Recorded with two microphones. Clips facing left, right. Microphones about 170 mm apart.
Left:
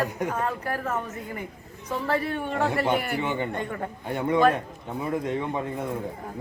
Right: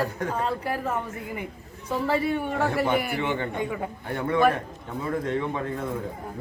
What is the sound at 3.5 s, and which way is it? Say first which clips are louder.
Speech: right 2 dB; 5° right (ahead or behind).